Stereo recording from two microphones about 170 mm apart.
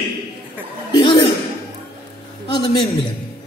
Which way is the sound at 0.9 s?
30° left (ahead or behind).